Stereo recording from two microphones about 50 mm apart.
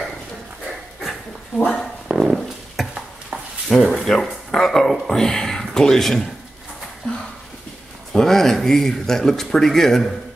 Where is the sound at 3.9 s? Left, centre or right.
Centre.